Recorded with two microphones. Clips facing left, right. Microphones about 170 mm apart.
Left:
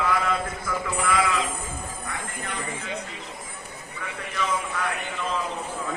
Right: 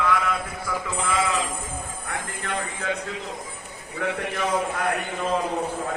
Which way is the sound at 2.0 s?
70° right (ahead or behind).